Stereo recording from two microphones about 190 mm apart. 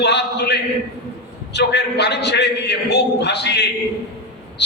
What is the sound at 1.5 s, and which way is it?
A man's voice, 60° left (ahead or behind).